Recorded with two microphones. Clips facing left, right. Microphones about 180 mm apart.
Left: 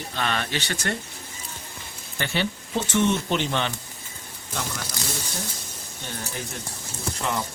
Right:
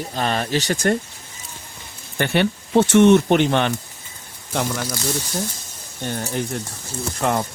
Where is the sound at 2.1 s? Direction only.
55° right (ahead or behind).